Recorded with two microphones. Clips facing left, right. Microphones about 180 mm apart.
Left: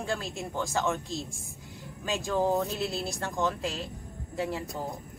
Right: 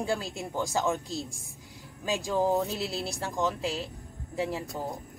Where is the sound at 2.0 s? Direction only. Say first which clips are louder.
Right 1 dB; 15° right (ahead or behind).